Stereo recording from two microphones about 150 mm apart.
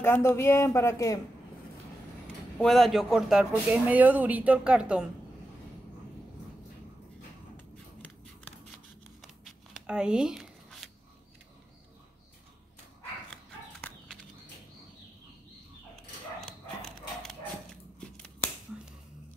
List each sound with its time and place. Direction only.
0.0 s speech: 15° left (ahead or behind)
2.6 s speech: centre (ahead or behind)
9.2 s a sound: 5° right (ahead or behind)
13.8 s horse: 5° left (ahead or behind)
16.3 s dog: centre (ahead or behind)